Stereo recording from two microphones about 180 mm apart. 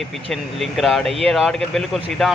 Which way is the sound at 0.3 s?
Centre (ahead or behind).